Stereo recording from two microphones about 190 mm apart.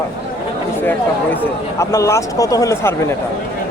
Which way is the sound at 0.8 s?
10° left (ahead or behind).